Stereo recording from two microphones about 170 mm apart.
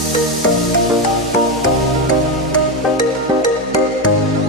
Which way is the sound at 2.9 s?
25° left (ahead or behind).